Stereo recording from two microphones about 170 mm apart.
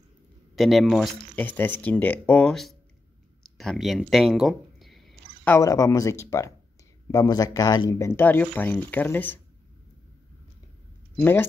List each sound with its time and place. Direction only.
0.6 s speech: centre (ahead or behind)
3.5 s a sound: centre (ahead or behind)
5.5 s speech: 20° left (ahead or behind)
11.1 s speech: 10° left (ahead or behind)